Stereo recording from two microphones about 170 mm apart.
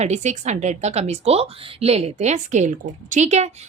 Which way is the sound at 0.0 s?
40° right (ahead or behind).